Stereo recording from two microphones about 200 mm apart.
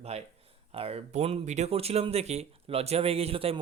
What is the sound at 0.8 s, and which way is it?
Speech, 30° right (ahead or behind).